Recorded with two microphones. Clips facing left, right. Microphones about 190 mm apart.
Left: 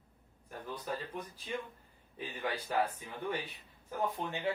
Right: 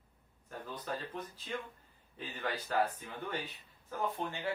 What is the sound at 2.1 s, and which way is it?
Speech, 10° left (ahead or behind).